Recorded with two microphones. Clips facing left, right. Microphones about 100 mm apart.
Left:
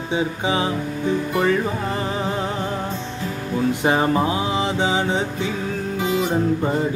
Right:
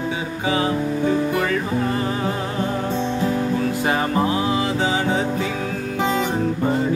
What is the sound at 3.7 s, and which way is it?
Music, 25° left (ahead or behind).